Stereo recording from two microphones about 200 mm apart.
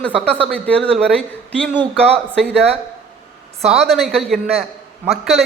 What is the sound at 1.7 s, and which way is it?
Speech, 25° right (ahead or behind).